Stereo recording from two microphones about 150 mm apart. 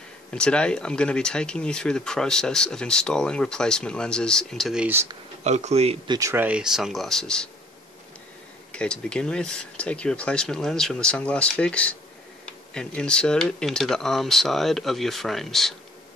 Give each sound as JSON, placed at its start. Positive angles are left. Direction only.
{"t": 0.3, "sound": "speech", "side_deg": 5}
{"t": 5.4, "sound": "speech", "side_deg": -50}
{"t": 6.0, "sound": "speech", "side_deg": -20}
{"t": 8.7, "sound": "speech", "side_deg": 5}